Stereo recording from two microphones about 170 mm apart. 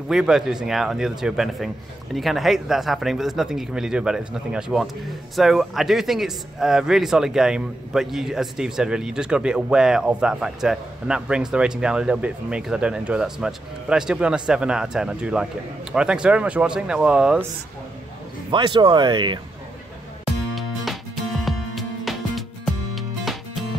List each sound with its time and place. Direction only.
0.1 s speech: 5° right (ahead or behind)
18.5 s speech: 30° right (ahead or behind)
20.5 s music: centre (ahead or behind)